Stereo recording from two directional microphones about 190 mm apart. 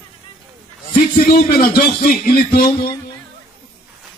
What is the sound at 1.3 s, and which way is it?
Speech, 50° left (ahead or behind).